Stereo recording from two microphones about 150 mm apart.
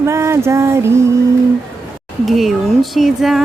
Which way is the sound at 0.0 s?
20° right (ahead or behind).